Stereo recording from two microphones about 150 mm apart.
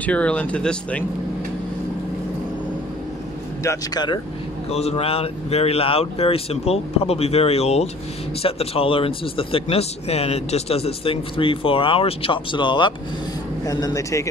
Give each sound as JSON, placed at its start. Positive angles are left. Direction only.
{"t": 0.0, "sound": "speech", "side_deg": 10}
{"t": 3.6, "sound": "speech", "side_deg": 25}
{"t": 4.6, "sound": "speech", "side_deg": 45}